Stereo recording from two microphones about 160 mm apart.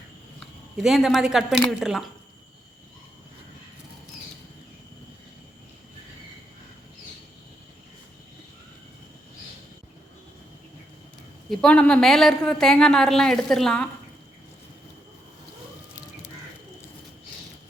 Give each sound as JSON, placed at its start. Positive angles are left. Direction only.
{"t": 0.3, "sound": "speech", "side_deg": 0}
{"t": 11.4, "sound": "a woman's voice", "side_deg": 5}